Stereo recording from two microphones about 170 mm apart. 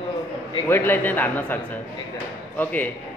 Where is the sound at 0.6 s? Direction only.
10° left (ahead or behind).